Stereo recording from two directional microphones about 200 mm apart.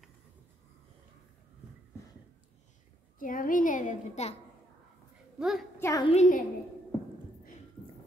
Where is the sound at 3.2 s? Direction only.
45° left (ahead or behind).